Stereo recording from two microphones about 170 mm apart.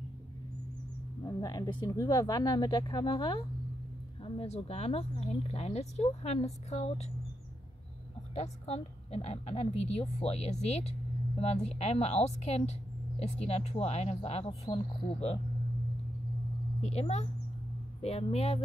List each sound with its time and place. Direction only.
1.2 s a woman's voice: 20° left (ahead or behind); by 7.1 s 40° left (ahead or behind)
8.4 s a woman's voice: 35° left (ahead or behind)
16.8 s a woman's voice: 40° left (ahead or behind)